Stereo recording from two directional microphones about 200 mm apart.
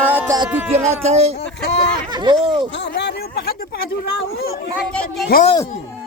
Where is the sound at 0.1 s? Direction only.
10° right (ahead or behind).